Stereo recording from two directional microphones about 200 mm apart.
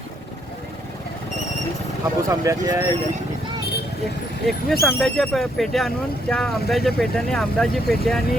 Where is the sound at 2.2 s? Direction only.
15° right (ahead or behind).